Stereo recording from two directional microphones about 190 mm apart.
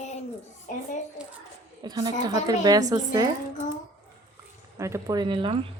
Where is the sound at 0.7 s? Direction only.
45° left (ahead or behind).